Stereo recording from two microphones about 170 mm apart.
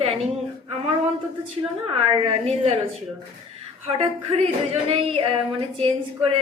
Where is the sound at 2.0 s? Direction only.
35° right (ahead or behind).